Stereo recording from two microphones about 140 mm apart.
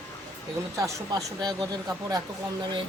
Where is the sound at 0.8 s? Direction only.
25° right (ahead or behind).